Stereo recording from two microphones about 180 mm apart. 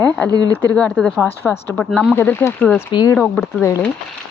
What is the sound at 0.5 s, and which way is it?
Speech, 10° left (ahead or behind).